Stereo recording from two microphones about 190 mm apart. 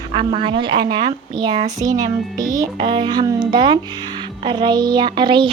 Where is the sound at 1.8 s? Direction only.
20° right (ahead or behind).